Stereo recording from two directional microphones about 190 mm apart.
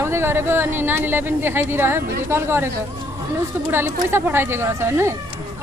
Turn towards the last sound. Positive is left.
turn(degrees=-15)  # may be behind; listen again after turning